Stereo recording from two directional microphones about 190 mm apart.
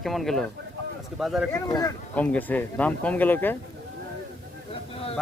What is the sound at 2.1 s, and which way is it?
Speech, 5° left (ahead or behind).